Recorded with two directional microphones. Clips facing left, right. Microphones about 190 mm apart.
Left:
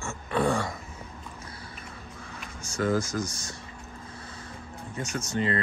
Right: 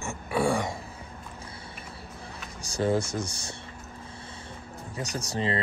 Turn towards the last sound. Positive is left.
turn(degrees=-30)  # may be behind; listen again after turning